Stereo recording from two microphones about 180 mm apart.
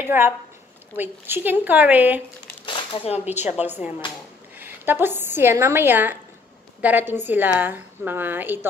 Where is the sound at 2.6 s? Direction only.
30° left (ahead or behind).